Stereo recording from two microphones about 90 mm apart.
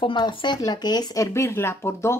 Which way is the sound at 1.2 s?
35° left (ahead or behind).